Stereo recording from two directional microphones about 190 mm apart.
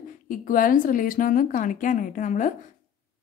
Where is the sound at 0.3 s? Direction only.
45° left (ahead or behind).